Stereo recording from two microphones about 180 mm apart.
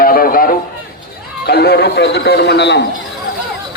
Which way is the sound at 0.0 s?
55° left (ahead or behind).